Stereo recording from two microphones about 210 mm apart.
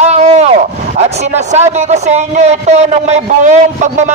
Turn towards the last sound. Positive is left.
turn(degrees=-35)  # may be behind; listen again after turning